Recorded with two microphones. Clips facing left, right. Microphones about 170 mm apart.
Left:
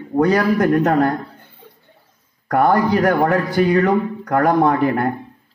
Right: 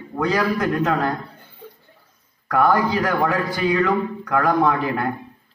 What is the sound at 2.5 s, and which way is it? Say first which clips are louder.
A man's voice: left 3 dB; 45° left (ahead or behind).